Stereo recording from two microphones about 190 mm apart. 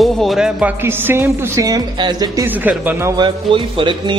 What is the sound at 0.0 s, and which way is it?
A man's voice, centre (ahead or behind).